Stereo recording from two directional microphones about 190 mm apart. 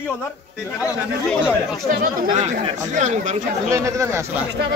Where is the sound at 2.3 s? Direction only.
40° right (ahead or behind).